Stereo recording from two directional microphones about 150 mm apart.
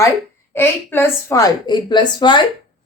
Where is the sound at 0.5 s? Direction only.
15° left (ahead or behind); by 2.4 s 30° left (ahead or behind).